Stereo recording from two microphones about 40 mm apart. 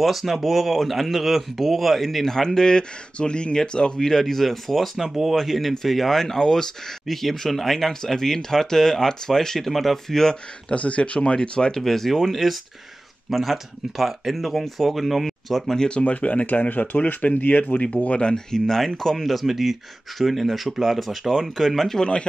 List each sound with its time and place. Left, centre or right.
0.0 s speech: centre
10.7 s speech: left
11.7 s speech: centre
15.9 s speech: left
17.8 s speech: left
18.3 s speech: centre
19.3 s speech: centre